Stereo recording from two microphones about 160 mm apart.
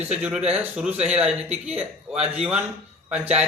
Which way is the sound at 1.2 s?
40° right (ahead or behind).